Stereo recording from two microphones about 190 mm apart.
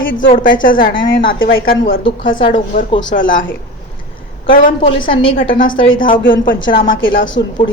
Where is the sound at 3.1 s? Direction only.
45° left (ahead or behind).